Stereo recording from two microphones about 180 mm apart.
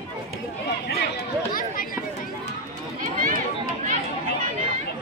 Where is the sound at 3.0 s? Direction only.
50° right (ahead or behind).